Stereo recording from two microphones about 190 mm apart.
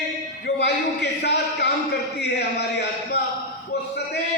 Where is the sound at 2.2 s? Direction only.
65° left (ahead or behind).